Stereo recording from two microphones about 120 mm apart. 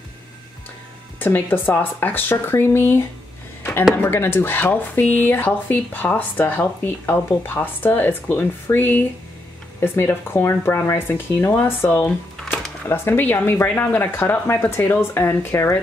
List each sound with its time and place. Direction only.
1.2 s speech: 15° left (ahead or behind)
4.0 s speech: 15° left (ahead or behind)